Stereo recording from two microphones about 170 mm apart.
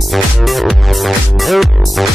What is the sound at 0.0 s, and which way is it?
Music, centre (ahead or behind).